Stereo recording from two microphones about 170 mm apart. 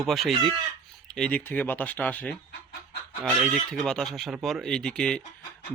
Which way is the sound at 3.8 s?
5° left (ahead or behind).